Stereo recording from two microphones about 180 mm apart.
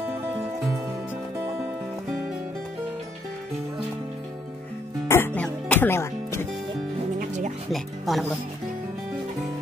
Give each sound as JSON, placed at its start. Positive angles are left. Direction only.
{"t": 5.0, "sound": "music", "side_deg": 10}
{"t": 7.2, "sound": "music", "side_deg": -40}
{"t": 7.7, "sound": "speech", "side_deg": 0}